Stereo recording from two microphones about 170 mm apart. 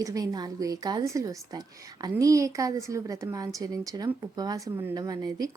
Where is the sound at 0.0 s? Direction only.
20° right (ahead or behind).